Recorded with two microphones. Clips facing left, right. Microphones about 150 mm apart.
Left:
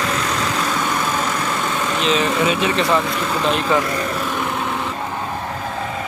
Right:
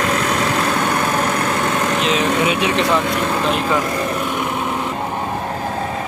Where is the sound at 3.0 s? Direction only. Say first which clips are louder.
Right 3 dB; 55° right (ahead or behind).